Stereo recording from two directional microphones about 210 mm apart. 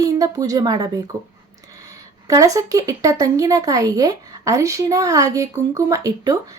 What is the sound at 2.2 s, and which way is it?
Speech, 15° right (ahead or behind).